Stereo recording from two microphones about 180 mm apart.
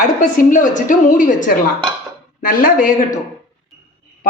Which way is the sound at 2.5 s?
50° left (ahead or behind).